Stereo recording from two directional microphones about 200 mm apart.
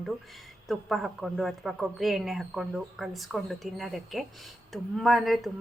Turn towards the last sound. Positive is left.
turn(degrees=0)  # may be behind; listen again after turning